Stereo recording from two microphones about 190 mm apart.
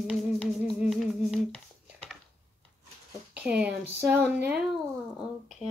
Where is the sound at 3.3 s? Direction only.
5° right (ahead or behind).